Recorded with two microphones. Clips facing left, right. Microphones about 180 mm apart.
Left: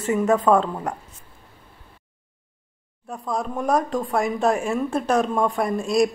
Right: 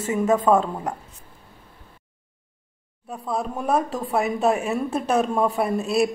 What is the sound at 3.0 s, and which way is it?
A woman's voice, 5° right (ahead or behind).